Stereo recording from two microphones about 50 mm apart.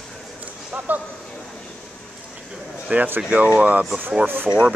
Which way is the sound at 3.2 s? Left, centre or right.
Right.